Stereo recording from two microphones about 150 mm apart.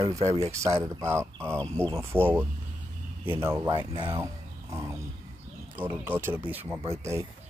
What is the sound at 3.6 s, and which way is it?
Speech, 30° right (ahead or behind).